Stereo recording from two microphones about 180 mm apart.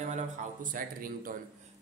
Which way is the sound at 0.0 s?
40° right (ahead or behind).